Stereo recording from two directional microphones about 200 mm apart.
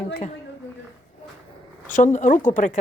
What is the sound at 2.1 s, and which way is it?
Speech, 40° left (ahead or behind).